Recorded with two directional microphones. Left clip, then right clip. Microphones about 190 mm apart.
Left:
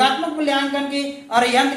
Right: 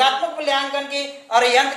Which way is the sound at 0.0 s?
30° right (ahead or behind).